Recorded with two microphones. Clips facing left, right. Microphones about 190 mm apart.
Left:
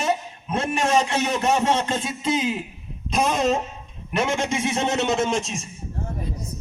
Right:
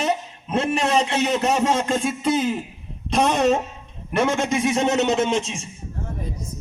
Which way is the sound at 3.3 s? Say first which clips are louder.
Right 3 dB; 70° right (ahead or behind).